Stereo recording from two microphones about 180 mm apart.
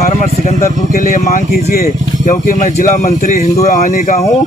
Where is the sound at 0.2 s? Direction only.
45° left (ahead or behind).